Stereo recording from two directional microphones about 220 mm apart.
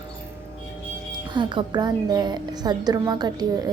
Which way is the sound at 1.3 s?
20° right (ahead or behind).